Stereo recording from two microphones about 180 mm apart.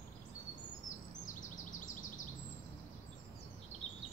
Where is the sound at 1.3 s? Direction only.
45° left (ahead or behind).